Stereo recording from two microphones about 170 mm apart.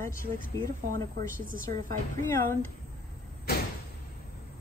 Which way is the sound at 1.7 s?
15° left (ahead or behind).